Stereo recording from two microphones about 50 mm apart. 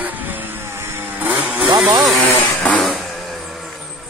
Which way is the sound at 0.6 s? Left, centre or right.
Right.